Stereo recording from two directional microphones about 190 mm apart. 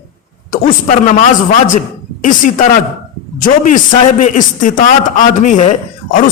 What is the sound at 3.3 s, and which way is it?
A man's voice, 45° left (ahead or behind).